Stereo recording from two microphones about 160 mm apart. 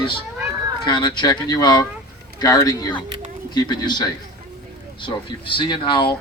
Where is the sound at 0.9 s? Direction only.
30° left (ahead or behind).